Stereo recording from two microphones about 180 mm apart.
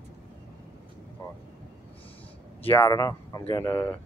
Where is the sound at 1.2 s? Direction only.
20° left (ahead or behind).